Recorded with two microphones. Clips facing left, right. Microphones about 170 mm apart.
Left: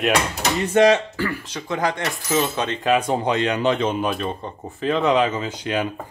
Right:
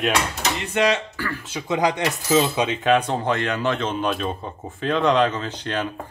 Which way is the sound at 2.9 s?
10° left (ahead or behind).